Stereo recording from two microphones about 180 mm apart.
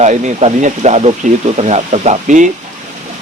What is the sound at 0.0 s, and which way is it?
Speech, 40° right (ahead or behind).